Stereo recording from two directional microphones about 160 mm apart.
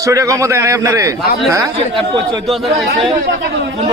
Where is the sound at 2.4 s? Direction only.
Centre (ahead or behind).